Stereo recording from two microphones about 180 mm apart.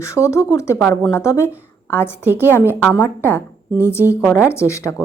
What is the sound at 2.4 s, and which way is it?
Speech, 15° left (ahead or behind).